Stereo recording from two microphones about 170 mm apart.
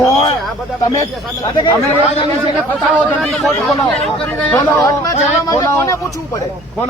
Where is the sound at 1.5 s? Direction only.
25° left (ahead or behind).